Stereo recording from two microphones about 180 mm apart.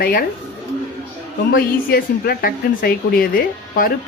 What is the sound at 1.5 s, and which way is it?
A woman's voice, 55° left (ahead or behind).